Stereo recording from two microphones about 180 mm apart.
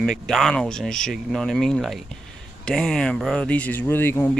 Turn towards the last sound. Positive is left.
turn(degrees=10)  # may be behind; listen again after turning